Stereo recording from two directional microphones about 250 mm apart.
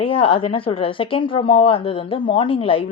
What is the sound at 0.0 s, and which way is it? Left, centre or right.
A woman's voice, left.